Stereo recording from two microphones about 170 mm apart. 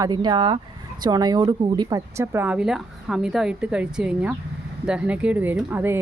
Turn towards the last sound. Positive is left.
turn(degrees=-10)  # may be behind; listen again after turning